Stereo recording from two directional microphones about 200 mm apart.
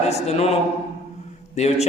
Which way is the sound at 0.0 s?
30° left (ahead or behind).